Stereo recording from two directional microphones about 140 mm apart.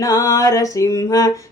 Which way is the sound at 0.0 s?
25° left (ahead or behind).